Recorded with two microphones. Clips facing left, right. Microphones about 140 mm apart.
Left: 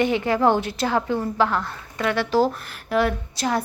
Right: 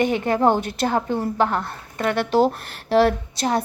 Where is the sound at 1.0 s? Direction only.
30° right (ahead or behind).